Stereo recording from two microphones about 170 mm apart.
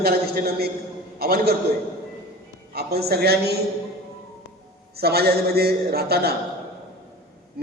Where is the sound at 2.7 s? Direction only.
70° right (ahead or behind).